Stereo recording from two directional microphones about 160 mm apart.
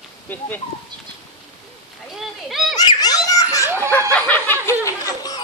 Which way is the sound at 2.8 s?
25° left (ahead or behind).